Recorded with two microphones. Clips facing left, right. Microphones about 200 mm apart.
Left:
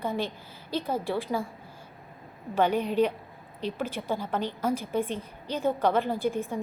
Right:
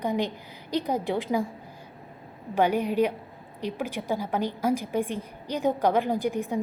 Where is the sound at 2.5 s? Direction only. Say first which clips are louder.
Right 1 dB; 10° right (ahead or behind).